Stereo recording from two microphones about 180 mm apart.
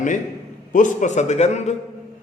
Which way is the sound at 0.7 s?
45° left (ahead or behind).